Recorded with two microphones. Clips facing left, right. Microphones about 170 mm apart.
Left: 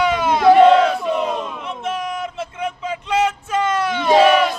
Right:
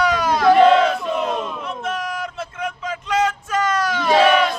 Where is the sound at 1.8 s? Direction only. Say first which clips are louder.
Left 3 dB; 25° left (ahead or behind).